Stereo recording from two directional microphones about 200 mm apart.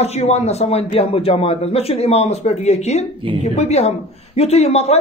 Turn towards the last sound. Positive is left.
turn(degrees=30)  # may be behind; listen again after turning